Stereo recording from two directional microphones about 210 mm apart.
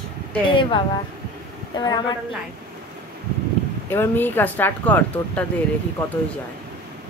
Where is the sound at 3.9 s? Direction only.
10° left (ahead or behind).